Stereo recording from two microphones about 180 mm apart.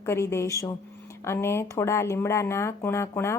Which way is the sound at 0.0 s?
15° left (ahead or behind).